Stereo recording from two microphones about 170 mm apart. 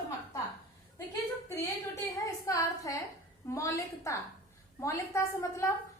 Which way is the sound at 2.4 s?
20° left (ahead or behind).